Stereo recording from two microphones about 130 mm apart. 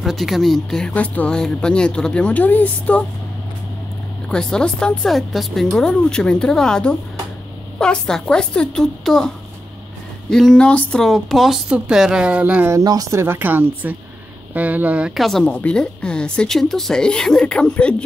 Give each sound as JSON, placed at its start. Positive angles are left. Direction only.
{"t": 0.0, "sound": "speech", "side_deg": 0}
{"t": 4.3, "sound": "speech", "side_deg": 5}
{"t": 10.3, "sound": "speech", "side_deg": 5}
{"t": 12.7, "sound": "speech", "side_deg": -25}